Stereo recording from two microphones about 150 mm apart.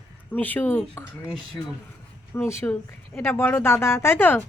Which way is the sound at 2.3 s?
15° left (ahead or behind).